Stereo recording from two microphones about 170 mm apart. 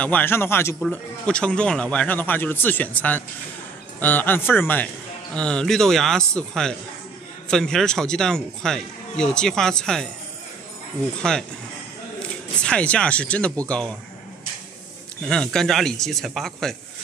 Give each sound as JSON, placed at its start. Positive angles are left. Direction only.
{"t": 0.0, "sound": "a man's voice", "side_deg": 10}
{"t": 12.2, "sound": "speech", "side_deg": 5}
{"t": 15.2, "sound": "a man's voice", "side_deg": 5}